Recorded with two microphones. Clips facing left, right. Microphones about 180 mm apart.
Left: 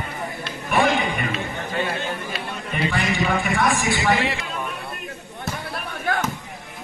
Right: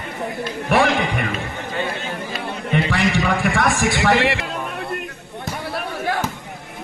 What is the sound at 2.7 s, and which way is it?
A man's voice, 90° right.